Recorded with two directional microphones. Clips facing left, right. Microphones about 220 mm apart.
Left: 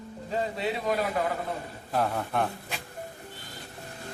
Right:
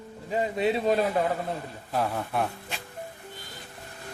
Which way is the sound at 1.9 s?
Centre (ahead or behind).